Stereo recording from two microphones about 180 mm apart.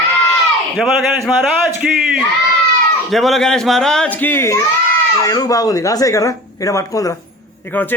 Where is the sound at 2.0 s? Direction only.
Centre (ahead or behind).